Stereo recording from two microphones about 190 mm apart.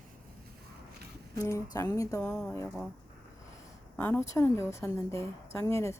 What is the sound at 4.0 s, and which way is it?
A woman's voice, 15° left (ahead or behind).